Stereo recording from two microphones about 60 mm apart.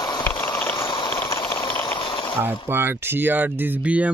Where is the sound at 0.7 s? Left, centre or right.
Left.